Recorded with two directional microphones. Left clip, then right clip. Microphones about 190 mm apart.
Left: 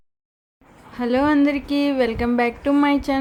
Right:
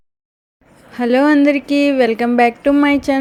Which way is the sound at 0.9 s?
25° right (ahead or behind).